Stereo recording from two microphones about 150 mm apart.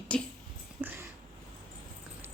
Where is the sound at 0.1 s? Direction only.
10° left (ahead or behind).